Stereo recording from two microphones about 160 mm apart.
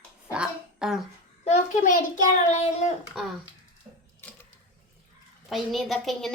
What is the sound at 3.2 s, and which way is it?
Speech, centre (ahead or behind).